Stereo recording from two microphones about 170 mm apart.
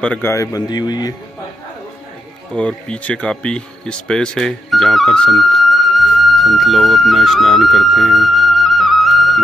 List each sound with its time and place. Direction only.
0.0 s a man's voice: 10° left (ahead or behind)
2.5 s speech: 5° left (ahead or behind)